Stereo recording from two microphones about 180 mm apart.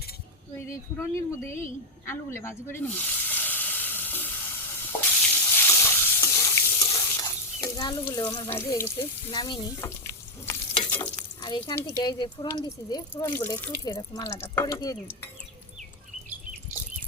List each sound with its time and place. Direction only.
0.5 s a woman's voice: 15° left (ahead or behind)
4.9 s water: 10° left (ahead or behind)
5.5 s stir: 15° left (ahead or behind)
6.8 s frying: 20° left (ahead or behind)
8.4 s speech: 15° left (ahead or behind)